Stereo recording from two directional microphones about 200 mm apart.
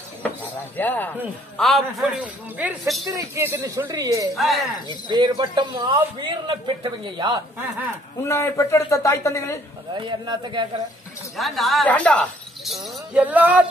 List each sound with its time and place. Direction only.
0.2 s cutlery: 10° left (ahead or behind)
1.6 s a man's voice: centre (ahead or behind); by 7.3 s 25° right (ahead or behind)
8.2 s speech: 15° left (ahead or behind)
9.9 s a man's voice: 25° right (ahead or behind)
11.3 s speech: centre (ahead or behind)